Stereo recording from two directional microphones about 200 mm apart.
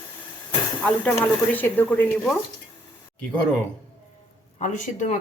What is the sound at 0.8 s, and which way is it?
Speech, 5° left (ahead or behind).